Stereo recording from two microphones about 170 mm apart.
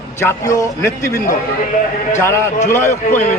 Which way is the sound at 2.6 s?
15° left (ahead or behind).